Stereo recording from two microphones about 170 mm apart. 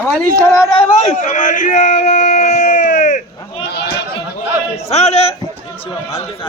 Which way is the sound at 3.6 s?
80° left.